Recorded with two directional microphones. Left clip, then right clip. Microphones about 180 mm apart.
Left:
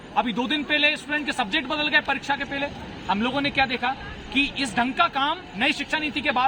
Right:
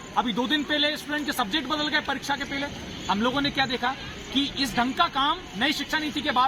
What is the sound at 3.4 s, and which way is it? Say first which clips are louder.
Speech: left 2 dB; 35° left (ahead or behind).